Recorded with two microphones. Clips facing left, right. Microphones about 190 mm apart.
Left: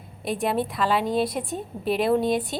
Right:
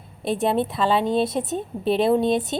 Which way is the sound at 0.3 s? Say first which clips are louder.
Right 3 dB; 25° right (ahead or behind).